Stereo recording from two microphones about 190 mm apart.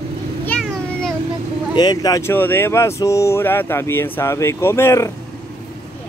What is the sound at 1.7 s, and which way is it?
Speech, 20° left (ahead or behind).